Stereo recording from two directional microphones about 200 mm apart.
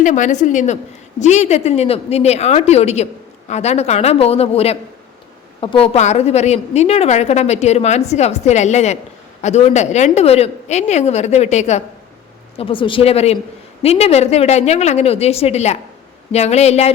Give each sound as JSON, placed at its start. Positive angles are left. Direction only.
{"t": 0.0, "sound": "a woman's voice", "side_deg": 40}